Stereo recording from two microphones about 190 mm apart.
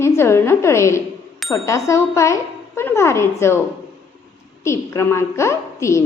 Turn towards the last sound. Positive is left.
turn(degrees=15)  # may be behind; listen again after turning